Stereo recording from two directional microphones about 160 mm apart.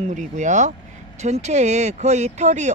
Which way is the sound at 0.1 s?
50° right (ahead or behind).